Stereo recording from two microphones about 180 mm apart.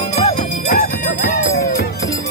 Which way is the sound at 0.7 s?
50° left (ahead or behind).